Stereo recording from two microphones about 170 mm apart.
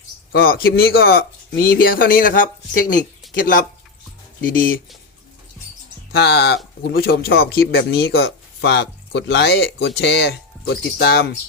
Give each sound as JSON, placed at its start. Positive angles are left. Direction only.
{"t": 0.3, "sound": "speech", "side_deg": 60}
{"t": 6.1, "sound": "speech", "side_deg": 70}
{"t": 6.8, "sound": "speech", "side_deg": 65}
{"t": 10.9, "sound": "speech", "side_deg": 70}